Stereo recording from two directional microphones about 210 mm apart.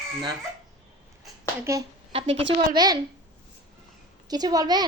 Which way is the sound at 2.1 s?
25° right (ahead or behind).